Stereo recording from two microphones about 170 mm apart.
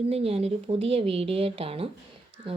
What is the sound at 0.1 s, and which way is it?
Speech, 35° right (ahead or behind).